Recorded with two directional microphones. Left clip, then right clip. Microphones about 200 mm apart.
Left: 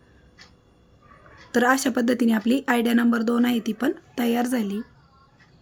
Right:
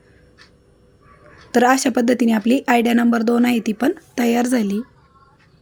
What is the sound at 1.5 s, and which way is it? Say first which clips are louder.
Speech: right 5 dB; 15° right (ahead or behind).